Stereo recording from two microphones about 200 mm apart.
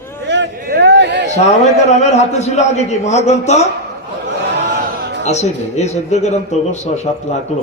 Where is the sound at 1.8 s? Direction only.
35° left (ahead or behind).